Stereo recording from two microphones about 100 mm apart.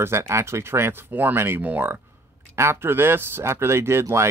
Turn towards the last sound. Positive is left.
turn(degrees=-25)  # may be behind; listen again after turning